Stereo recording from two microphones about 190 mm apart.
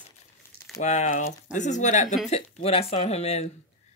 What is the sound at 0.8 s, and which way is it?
Speech, 40° left (ahead or behind).